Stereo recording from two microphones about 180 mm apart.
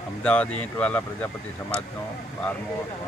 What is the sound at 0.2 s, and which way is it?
Speech, 5° left (ahead or behind).